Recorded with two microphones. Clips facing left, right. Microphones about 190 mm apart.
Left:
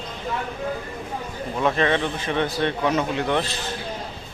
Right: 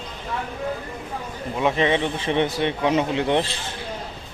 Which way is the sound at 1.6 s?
15° right (ahead or behind).